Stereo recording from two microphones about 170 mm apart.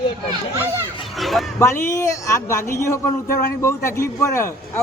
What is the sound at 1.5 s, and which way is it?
A man's voice, 15° left (ahead or behind).